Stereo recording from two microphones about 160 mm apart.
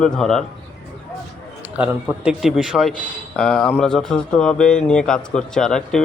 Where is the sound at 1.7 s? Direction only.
5° right (ahead or behind).